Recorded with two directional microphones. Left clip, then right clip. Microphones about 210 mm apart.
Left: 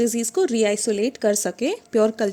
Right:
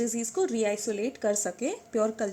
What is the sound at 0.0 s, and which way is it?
Speech, 55° left (ahead or behind).